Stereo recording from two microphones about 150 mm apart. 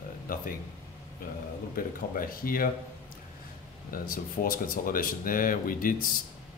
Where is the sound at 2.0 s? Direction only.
70° left (ahead or behind).